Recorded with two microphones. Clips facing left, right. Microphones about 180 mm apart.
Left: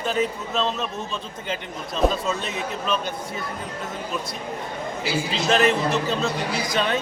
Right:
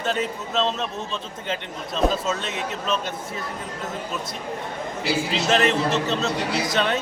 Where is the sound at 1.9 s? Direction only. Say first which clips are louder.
Even; centre (ahead or behind).